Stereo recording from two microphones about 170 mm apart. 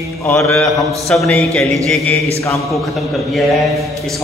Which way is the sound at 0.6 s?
Centre (ahead or behind).